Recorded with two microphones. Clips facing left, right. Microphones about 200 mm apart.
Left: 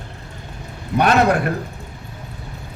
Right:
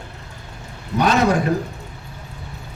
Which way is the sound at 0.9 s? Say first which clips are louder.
Left 2 dB; 60° left (ahead or behind).